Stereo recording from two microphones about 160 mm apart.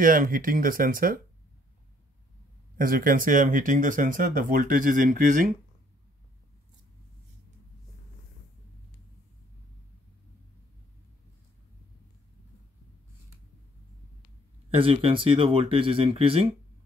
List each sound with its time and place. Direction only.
0.0 s speech: 60° right (ahead or behind)
2.8 s speech: 60° right (ahead or behind)
14.8 s speech: 35° right (ahead or behind)